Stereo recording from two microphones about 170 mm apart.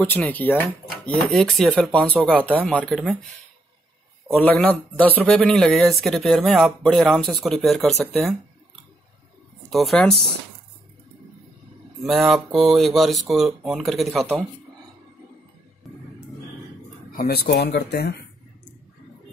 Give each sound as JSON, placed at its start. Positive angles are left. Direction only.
{"t": 0.1, "sound": "speech", "side_deg": 10}
{"t": 4.3, "sound": "speech", "side_deg": 5}
{"t": 9.7, "sound": "speech", "side_deg": 0}
{"t": 12.0, "sound": "speech", "side_deg": 0}
{"t": 17.1, "sound": "speech", "side_deg": 60}